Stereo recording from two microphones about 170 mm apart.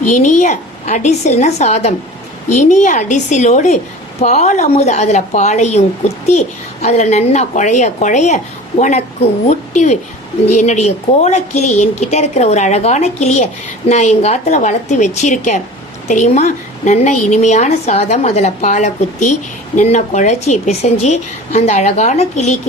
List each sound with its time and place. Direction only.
0.1 s a woman's voice: 45° left (ahead or behind)
6.8 s a woman's voice: 40° left (ahead or behind)